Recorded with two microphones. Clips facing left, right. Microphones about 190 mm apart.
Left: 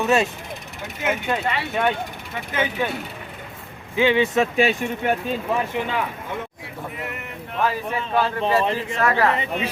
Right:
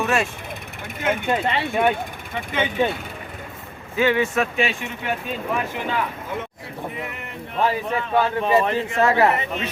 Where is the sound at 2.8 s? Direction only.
25° right (ahead or behind).